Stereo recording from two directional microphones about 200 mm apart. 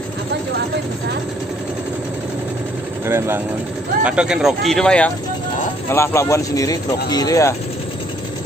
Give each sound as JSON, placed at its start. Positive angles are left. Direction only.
{"t": 3.1, "sound": "speech", "side_deg": -10}